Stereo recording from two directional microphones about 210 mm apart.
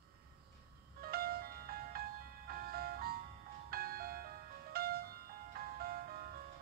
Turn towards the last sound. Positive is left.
turn(degrees=-45)  # may be behind; listen again after turning